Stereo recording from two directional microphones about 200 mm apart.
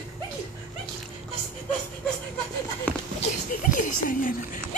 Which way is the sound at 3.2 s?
40° left (ahead or behind).